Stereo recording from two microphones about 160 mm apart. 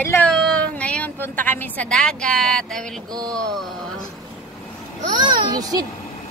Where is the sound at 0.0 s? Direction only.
15° left (ahead or behind).